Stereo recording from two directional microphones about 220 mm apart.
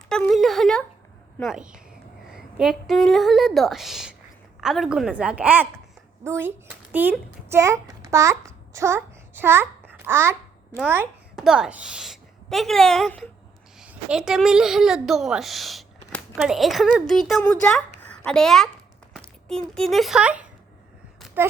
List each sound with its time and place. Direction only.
0.1 s a sound: 5° left (ahead or behind)
1.4 s a woman's voice: centre (ahead or behind)
8.1 s babbling: 15° right (ahead or behind)
10.8 s a child's voice: 10° right (ahead or behind)
19.7 s a woman's voice: centre (ahead or behind)